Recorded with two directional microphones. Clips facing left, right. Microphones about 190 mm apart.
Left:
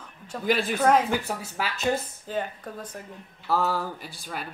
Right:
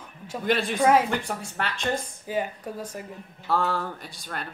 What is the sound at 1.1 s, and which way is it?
Speech, 5° left (ahead or behind).